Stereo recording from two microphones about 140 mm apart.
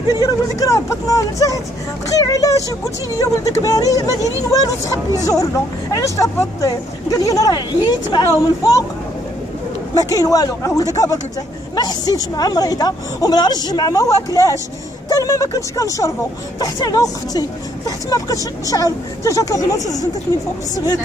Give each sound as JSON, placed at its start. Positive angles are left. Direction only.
{"t": 0.1, "sound": "speech", "side_deg": 25}
{"t": 9.9, "sound": "speech", "side_deg": 25}